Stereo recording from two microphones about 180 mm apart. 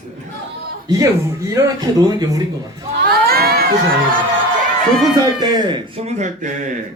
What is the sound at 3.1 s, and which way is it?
Crowd, 60° right (ahead or behind).